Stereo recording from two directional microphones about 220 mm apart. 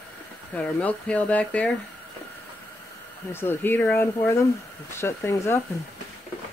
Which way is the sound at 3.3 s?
10° left (ahead or behind).